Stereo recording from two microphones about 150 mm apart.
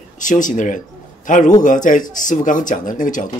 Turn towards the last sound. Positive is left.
turn(degrees=60)  # may be behind; listen again after turning